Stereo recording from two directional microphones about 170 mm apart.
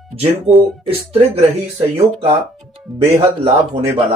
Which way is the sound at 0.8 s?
35° right (ahead or behind).